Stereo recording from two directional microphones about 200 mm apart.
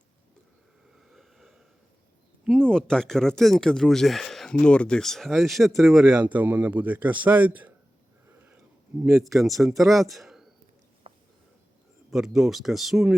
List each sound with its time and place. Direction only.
0.9 s a sound: centre (ahead or behind)
2.4 s speech: 5° left (ahead or behind)
8.3 s sniff: 10° right (ahead or behind)
9.0 s speech: 15° right (ahead or behind)
9.9 s speech: centre (ahead or behind)
11.1 s a sound: 30° right (ahead or behind)
12.1 s speech: centre (ahead or behind)